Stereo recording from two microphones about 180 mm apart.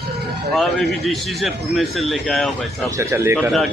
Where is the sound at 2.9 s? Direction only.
15° right (ahead or behind).